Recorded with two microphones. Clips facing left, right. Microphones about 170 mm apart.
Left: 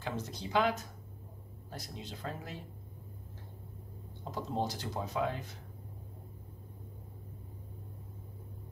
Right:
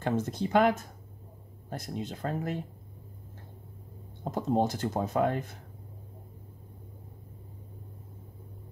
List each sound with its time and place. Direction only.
0.0 s speech: 50° right (ahead or behind)
4.2 s speech: 50° right (ahead or behind)